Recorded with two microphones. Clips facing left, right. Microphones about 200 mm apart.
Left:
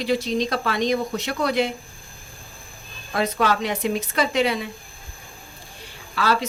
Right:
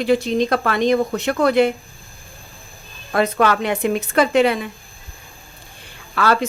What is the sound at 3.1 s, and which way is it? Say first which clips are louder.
A woman's voice: right 4 dB; 55° right (ahead or behind).